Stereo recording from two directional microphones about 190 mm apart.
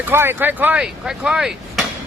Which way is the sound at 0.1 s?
10° right (ahead or behind).